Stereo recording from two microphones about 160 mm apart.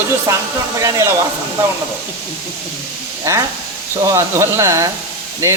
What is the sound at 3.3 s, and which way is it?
Speech, 20° right (ahead or behind).